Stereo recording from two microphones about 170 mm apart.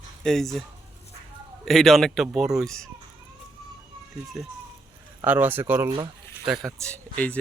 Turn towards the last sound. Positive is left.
turn(degrees=10)  # may be behind; listen again after turning